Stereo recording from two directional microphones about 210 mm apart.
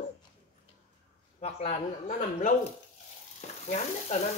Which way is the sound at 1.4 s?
30° left (ahead or behind).